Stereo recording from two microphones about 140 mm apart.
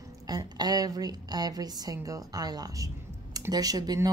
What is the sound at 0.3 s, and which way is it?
A woman's voice, 30° right (ahead or behind).